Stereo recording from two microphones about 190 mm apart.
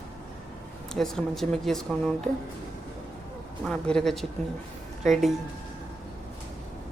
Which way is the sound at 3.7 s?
5° left (ahead or behind).